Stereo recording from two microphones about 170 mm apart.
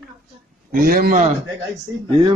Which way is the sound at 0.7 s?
60° right (ahead or behind).